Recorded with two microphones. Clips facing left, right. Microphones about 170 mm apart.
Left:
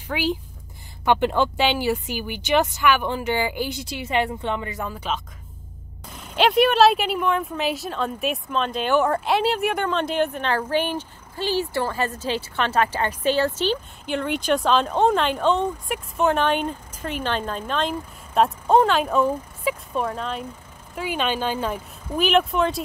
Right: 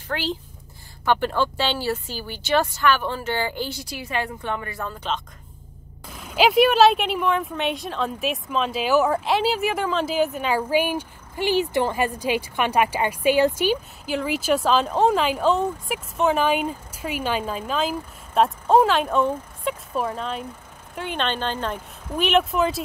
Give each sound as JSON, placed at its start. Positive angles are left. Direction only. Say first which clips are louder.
{"t": 0.1, "sound": "speech", "louder": "left 3 dB", "side_deg": 10}
{"t": 6.0, "sound": "speech", "louder": "right 1 dB", "side_deg": 0}